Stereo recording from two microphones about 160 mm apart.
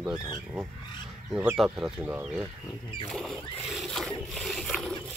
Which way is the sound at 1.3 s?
5° right (ahead or behind).